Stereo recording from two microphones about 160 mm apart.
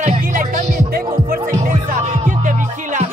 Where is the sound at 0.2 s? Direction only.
55° right (ahead or behind).